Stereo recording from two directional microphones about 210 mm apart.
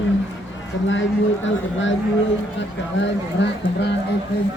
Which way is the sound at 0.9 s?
65° left (ahead or behind).